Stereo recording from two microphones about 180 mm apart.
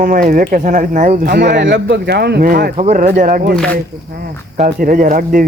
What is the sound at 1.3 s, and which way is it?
Speech, 70° right (ahead or behind).